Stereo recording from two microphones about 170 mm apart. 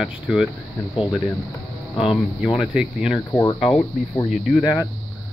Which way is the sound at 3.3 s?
20° left (ahead or behind).